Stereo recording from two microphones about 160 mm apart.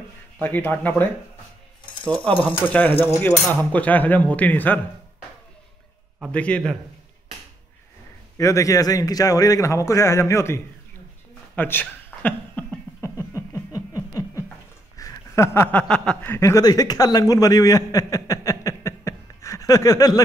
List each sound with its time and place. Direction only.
0.4 s cutlery: 10° left (ahead or behind)
2.4 s cutlery: 10° left (ahead or behind)
6.3 s cutlery: 5° left (ahead or behind)
8.4 s a man's voice: 20° left (ahead or behind)
11.5 s a sound: 10° left (ahead or behind)
15.0 s speech: 20° left (ahead or behind)